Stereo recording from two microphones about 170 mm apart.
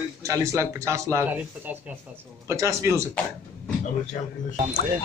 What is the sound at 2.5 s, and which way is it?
Speech, 20° right (ahead or behind).